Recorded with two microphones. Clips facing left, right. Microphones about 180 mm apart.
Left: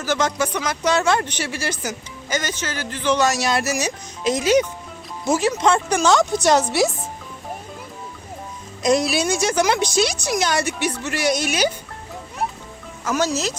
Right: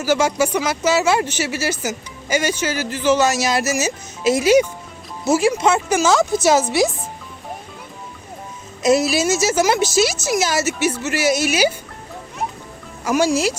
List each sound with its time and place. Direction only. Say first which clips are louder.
0.0 s a woman's voice: right 4 dB; 10° right (ahead or behind)
8.8 s a woman's voice: right 3 dB; 5° right (ahead or behind)
13.1 s speech: right 4 dB; 10° right (ahead or behind)